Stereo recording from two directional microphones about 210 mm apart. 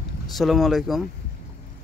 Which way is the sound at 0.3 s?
Centre (ahead or behind).